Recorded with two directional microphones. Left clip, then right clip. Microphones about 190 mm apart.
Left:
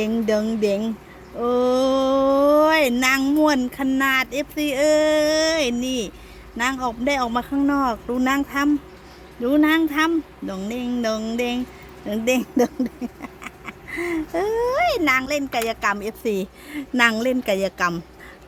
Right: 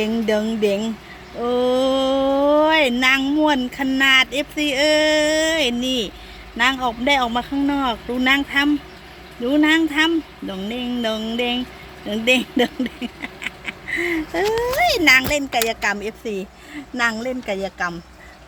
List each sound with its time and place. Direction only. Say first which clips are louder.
0.0 s a sound: right 1 dB; 5° left (ahead or behind)
12.6 s speech: right 1 dB; 5° right (ahead or behind)
16.2 s speech: left 3 dB; 30° left (ahead or behind); by 18.0 s 60° left (ahead or behind)